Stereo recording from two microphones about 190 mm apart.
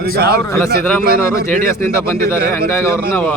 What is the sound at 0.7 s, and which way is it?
Speech, 50° right (ahead or behind).